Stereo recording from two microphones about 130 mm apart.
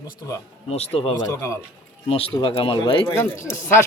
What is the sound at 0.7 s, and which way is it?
Speech, 50° left (ahead or behind).